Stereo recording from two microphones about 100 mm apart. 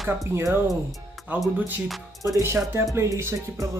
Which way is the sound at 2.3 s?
30° right (ahead or behind).